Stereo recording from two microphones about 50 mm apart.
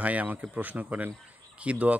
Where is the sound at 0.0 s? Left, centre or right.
Right.